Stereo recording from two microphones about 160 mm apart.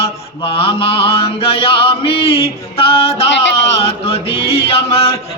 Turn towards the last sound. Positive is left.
turn(degrees=40)  # may be behind; listen again after turning